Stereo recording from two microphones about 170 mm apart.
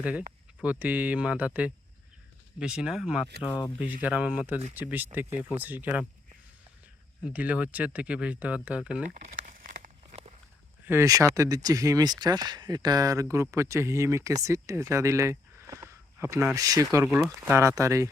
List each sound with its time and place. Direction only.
0.0 s speech: 10° right (ahead or behind)
7.3 s speech: 10° right (ahead or behind)
9.2 s a sound: 45° right (ahead or behind)
10.8 s speech: 15° right (ahead or behind)